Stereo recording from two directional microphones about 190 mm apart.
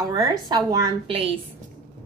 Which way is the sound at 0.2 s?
20° right (ahead or behind).